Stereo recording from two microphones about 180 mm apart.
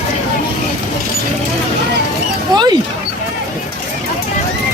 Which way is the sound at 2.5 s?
25° right (ahead or behind).